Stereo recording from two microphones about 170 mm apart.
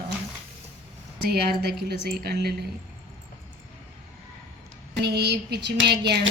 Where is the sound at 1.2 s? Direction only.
70° right (ahead or behind).